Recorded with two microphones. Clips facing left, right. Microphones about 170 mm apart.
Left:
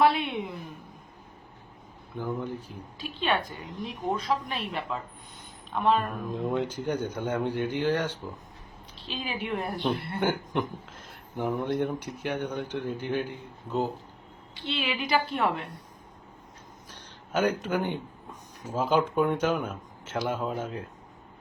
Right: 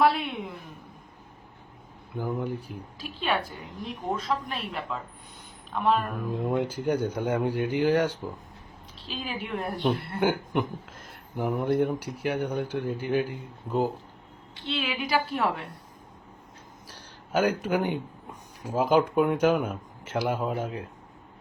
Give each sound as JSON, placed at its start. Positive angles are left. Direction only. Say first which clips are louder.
{"t": 0.0, "sound": "a woman's voice", "louder": "even", "side_deg": 0}
{"t": 2.1, "sound": "a woman's voice", "louder": "right 2 dB", "side_deg": -10}
{"t": 9.0, "sound": "a woman's voice", "louder": "left 1 dB", "side_deg": 0}
{"t": 16.9, "sound": "a man's voice", "louder": "right 2 dB", "side_deg": -10}